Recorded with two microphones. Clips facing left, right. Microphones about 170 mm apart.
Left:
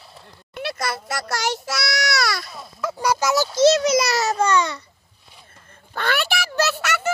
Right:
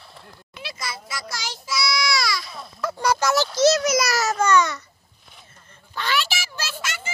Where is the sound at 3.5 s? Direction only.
30° left (ahead or behind).